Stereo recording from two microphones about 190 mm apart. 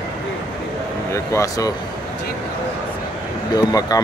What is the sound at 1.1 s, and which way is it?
Speech, 15° left (ahead or behind).